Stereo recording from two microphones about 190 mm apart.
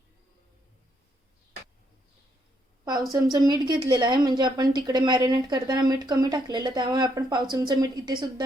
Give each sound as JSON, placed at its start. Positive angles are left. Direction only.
{"t": 3.3, "sound": "a woman's voice", "side_deg": -20}